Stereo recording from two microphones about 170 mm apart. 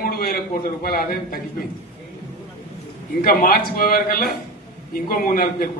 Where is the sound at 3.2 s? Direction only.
60° left (ahead or behind).